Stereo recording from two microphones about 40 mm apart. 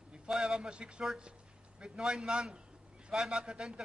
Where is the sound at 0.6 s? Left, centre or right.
Right.